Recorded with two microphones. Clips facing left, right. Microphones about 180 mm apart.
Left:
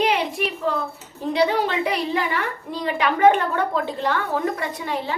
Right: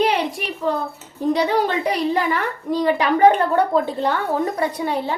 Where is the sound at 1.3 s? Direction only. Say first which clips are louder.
Right 2 dB; 40° right (ahead or behind).